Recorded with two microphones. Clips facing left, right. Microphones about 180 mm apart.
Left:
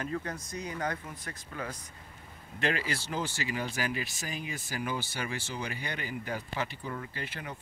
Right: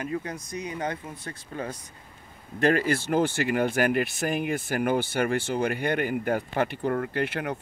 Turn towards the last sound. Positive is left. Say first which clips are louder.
# right 12 dB
turn(degrees=-65)  # may be behind; listen again after turning